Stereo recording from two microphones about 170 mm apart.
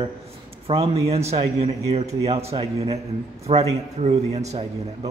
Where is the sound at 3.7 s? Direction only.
40° right (ahead or behind).